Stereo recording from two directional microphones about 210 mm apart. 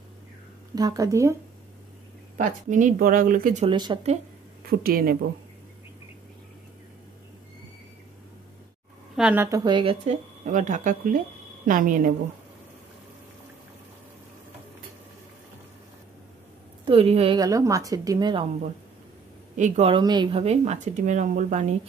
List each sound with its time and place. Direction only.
0.7 s speech: 15° right (ahead or behind)
2.3 s speech: 35° right (ahead or behind)
3.6 s a woman's voice: 20° right (ahead or behind)
4.6 s a woman's voice: 45° right (ahead or behind)
9.1 s a woman's voice: 5° right (ahead or behind)
9.7 s speech: 25° right (ahead or behind); by 12.1 s 40° right (ahead or behind)
16.8 s a woman's voice: 25° right (ahead or behind)
19.5 s speech: 35° right (ahead or behind)